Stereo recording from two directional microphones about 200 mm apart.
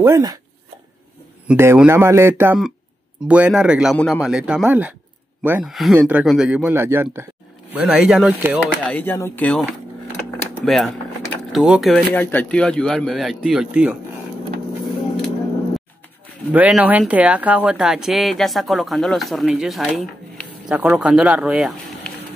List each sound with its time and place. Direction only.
0.0 s speech: 15° right (ahead or behind)
1.5 s speech: 10° right (ahead or behind)
8.6 s speech: 5° left (ahead or behind)
16.5 s speech: 5° right (ahead or behind)